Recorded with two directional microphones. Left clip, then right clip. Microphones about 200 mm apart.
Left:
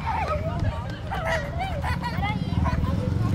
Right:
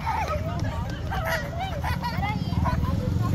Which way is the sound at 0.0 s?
45° right (ahead or behind).